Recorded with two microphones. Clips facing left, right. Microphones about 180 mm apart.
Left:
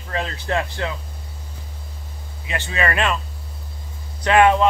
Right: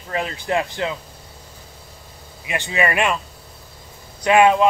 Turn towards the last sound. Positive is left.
turn(degrees=-15)  # may be behind; listen again after turning